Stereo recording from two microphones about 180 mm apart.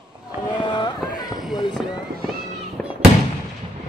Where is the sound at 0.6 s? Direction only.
25° left (ahead or behind).